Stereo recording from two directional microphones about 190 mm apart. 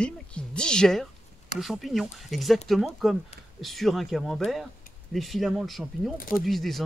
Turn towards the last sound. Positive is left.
turn(degrees=0)  # may be behind; listen again after turning